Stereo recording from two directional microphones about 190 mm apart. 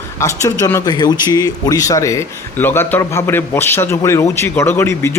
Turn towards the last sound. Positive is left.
turn(degrees=15)  # may be behind; listen again after turning